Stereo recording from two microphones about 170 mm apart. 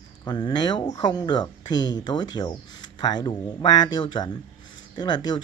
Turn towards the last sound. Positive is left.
turn(degrees=25)  # may be behind; listen again after turning